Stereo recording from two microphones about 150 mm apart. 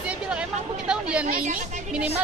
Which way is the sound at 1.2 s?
65° right (ahead or behind).